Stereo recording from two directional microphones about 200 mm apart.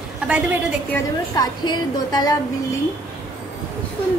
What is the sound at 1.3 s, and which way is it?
Speech, 20° left (ahead or behind).